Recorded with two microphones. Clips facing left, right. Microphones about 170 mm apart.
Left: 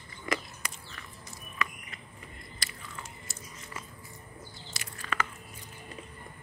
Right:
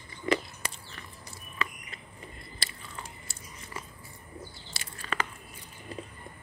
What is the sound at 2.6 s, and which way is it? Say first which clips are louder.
Biting: right 1 dB; 30° right (ahead or behind).